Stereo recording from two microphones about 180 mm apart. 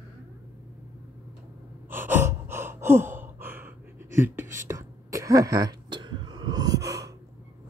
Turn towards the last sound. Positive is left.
turn(degrees=-20)  # may be behind; listen again after turning